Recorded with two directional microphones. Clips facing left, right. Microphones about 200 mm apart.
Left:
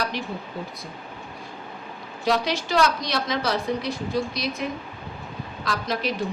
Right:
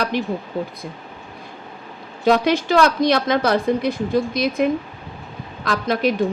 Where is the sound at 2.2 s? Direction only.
55° right (ahead or behind).